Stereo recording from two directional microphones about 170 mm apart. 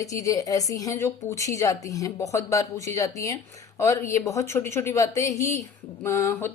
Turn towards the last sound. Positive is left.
turn(degrees=15)  # may be behind; listen again after turning